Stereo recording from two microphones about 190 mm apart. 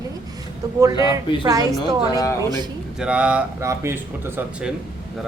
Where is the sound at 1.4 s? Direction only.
20° right (ahead or behind).